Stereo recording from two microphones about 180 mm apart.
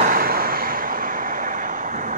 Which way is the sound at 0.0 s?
55° right (ahead or behind).